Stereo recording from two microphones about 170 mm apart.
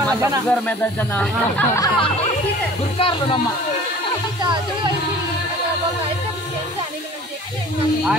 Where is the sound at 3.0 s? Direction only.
30° left (ahead or behind).